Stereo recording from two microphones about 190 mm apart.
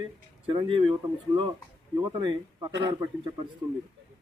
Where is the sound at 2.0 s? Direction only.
20° right (ahead or behind).